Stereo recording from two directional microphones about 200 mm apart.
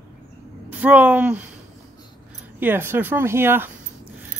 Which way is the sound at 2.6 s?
10° right (ahead or behind).